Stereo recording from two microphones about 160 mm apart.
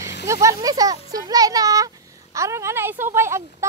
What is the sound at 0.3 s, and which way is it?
A woman's voice, 20° right (ahead or behind).